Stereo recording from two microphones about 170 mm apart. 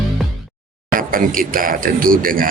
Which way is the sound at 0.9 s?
55° right (ahead or behind).